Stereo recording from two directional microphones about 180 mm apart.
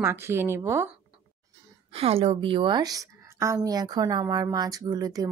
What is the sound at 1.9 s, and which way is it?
A woman's voice, 30° right (ahead or behind).